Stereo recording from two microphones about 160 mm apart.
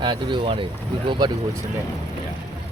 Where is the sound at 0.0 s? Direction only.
30° right (ahead or behind).